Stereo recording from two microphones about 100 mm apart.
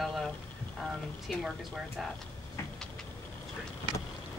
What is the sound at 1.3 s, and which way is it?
Speech, centre (ahead or behind).